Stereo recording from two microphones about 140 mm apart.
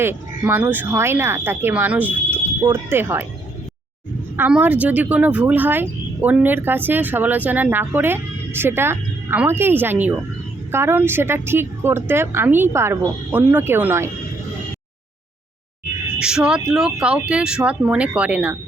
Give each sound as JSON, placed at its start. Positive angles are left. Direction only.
{"t": 0.0, "sound": "speech", "side_deg": -15}
{"t": 4.4, "sound": "speech", "side_deg": -10}
{"t": 16.1, "sound": "speech", "side_deg": -5}